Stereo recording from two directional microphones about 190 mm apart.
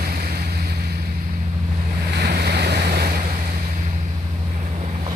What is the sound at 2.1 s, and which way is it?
Waves, 60° right (ahead or behind).